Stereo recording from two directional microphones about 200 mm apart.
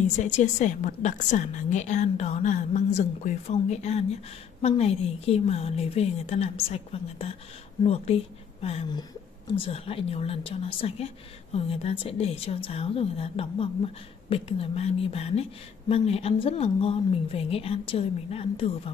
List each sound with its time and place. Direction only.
0.2 s a woman's voice: 35° left (ahead or behind)